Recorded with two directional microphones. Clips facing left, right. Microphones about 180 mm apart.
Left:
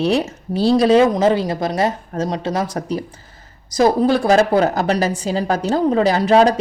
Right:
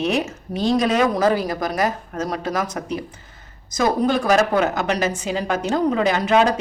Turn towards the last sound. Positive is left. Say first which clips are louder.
# left 4 dB
turn(degrees=35)  # may be behind; listen again after turning